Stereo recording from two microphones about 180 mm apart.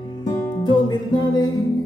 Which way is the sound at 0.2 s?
25° left (ahead or behind).